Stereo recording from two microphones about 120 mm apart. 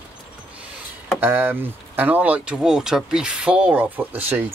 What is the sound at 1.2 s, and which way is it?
Speech, 20° right (ahead or behind).